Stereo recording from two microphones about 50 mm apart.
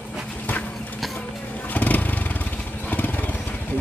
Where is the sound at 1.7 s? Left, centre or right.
Left.